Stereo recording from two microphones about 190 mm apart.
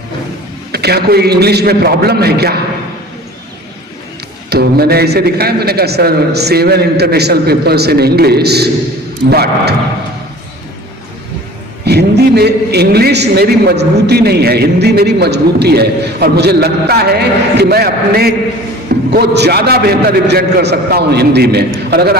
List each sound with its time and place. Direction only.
0.7 s a man's voice: 55° right (ahead or behind)
4.4 s a man's voice: 55° right (ahead or behind)
11.9 s a man's voice: 60° right (ahead or behind)